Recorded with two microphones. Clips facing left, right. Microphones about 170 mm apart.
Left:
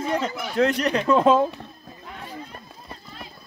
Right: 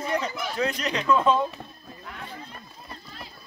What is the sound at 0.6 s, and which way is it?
Speech, 70° left (ahead or behind).